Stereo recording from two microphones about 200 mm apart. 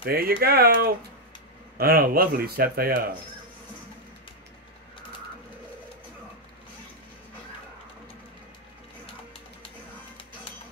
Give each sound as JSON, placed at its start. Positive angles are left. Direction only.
{"t": 0.0, "sound": "speech", "side_deg": -50}